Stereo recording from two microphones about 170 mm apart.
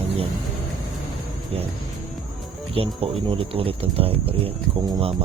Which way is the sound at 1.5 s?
35° right (ahead or behind).